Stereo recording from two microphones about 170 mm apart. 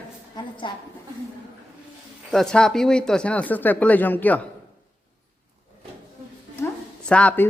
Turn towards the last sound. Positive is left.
turn(degrees=10)  # may be behind; listen again after turning